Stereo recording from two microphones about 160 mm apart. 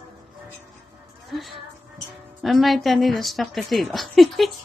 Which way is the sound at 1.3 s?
Centre (ahead or behind).